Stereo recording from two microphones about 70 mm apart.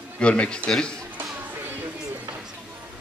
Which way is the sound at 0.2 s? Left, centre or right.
Centre.